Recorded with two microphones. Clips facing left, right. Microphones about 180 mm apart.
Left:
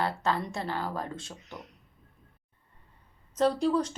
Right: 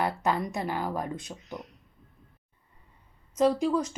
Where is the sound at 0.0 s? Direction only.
15° right (ahead or behind).